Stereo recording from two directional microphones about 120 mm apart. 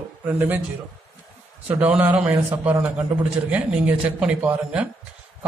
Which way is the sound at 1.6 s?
10° right (ahead or behind).